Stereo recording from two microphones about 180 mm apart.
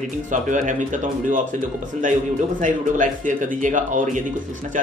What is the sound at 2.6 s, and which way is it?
A man's voice, 45° right (ahead or behind).